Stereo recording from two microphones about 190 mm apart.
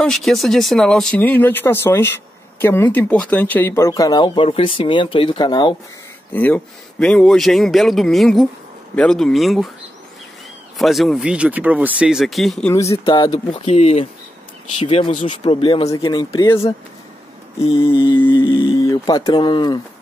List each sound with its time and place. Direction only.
0.0 s speech: centre (ahead or behind); by 5.8 s 25° left (ahead or behind)
6.3 s speech: 5° left (ahead or behind)
10.8 s speech: centre (ahead or behind)
12.7 s speech: 15° left (ahead or behind); by 15.4 s 40° left (ahead or behind)
15.4 s speech: 25° left (ahead or behind)
17.6 s speech: 30° left (ahead or behind)